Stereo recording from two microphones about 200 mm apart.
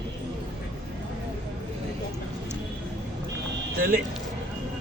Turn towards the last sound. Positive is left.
turn(degrees=-45)  # may be behind; listen again after turning